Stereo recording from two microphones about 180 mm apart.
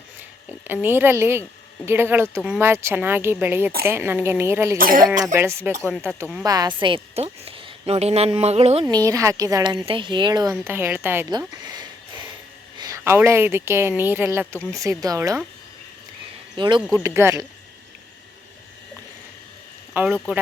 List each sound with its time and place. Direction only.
0.7 s speech: 10° right (ahead or behind)
4.8 s speech: 50° right (ahead or behind)
5.3 s a woman's voice: 15° right (ahead or behind); by 8.9 s 35° right (ahead or behind)
8.9 s a woman's voice: 20° right (ahead or behind)
10.5 s speech: 10° right (ahead or behind)
11.3 s a sound: 20° right (ahead or behind)
12.8 s speech: 15° right (ahead or behind)
16.6 s a woman's voice: 25° right (ahead or behind)
16.9 s speech: 15° right (ahead or behind)
19.9 s speech: 10° right (ahead or behind)